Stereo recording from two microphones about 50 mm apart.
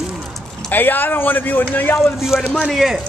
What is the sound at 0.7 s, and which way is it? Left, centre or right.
Speech, left.